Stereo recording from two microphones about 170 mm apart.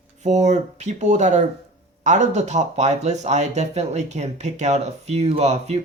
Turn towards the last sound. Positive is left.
turn(degrees=-40)  # may be behind; listen again after turning